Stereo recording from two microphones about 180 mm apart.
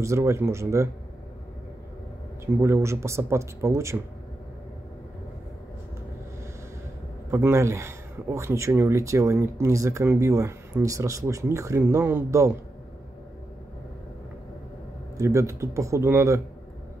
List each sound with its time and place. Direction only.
0.0 s speech: 15° right (ahead or behind)
2.4 s speech: 15° right (ahead or behind)
7.2 s speech: 15° right (ahead or behind)
15.1 s speech: 15° right (ahead or behind)